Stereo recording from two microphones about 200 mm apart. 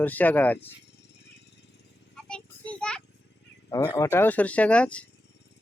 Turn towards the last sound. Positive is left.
turn(degrees=5)  # may be behind; listen again after turning